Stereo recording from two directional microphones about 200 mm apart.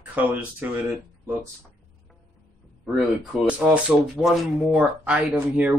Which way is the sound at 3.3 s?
5° right (ahead or behind).